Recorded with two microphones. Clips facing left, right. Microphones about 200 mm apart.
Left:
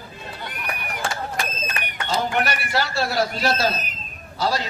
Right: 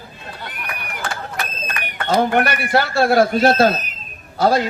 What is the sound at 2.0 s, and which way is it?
A man's voice, 55° right (ahead or behind).